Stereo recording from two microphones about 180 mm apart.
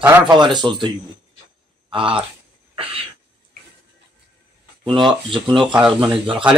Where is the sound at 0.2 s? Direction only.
25° right (ahead or behind).